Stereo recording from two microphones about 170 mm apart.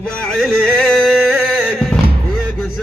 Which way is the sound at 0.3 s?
5° left (ahead or behind).